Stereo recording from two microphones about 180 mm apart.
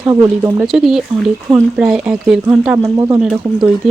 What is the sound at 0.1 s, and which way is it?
Speech, 15° right (ahead or behind).